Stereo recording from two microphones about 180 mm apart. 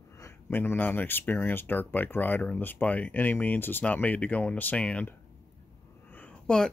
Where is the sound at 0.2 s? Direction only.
10° left (ahead or behind).